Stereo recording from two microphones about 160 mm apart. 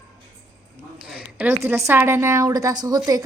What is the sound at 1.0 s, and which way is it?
A woman's voice, 5° right (ahead or behind).